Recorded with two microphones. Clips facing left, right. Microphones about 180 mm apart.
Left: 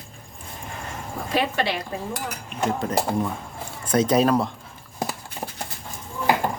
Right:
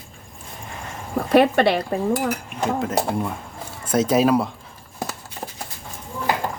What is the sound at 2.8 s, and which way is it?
Speech, 5° right (ahead or behind).